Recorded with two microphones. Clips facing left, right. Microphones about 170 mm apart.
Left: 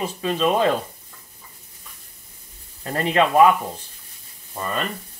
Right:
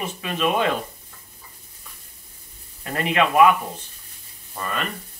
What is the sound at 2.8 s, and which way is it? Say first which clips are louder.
Speech: left 2 dB; 30° left (ahead or behind).